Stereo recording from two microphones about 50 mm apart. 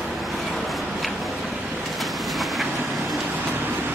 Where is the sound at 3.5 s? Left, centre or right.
Right.